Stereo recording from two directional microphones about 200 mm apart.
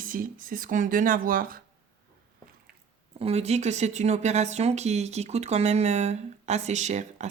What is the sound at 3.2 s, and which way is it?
Speech, 30° right (ahead or behind).